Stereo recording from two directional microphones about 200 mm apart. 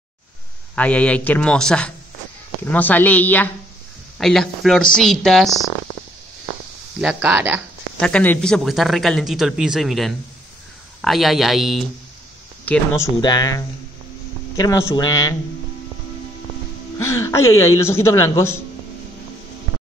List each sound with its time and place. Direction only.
0.7 s a woman's voice: 5° left (ahead or behind)
7.0 s speech: 5° right (ahead or behind)
8.0 s speech: 5° left (ahead or behind)
12.6 s a woman's voice: 10° left (ahead or behind)
14.6 s a woman's voice: 15° left (ahead or behind)
17.0 s a woman's voice: 15° left (ahead or behind)